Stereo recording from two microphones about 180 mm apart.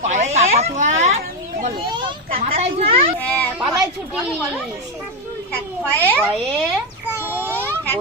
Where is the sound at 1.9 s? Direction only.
25° right (ahead or behind).